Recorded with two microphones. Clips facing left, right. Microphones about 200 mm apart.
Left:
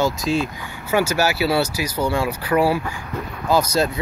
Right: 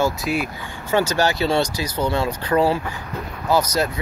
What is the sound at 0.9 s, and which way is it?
Speech, 10° left (ahead or behind).